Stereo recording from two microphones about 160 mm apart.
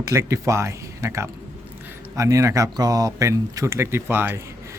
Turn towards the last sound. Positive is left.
turn(degrees=-15)  # may be behind; listen again after turning